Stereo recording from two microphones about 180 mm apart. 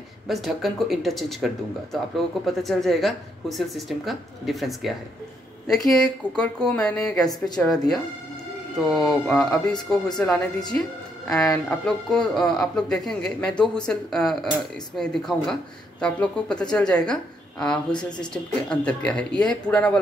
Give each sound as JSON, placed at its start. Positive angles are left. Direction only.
{"t": 0.3, "sound": "a woman's voice", "side_deg": 0}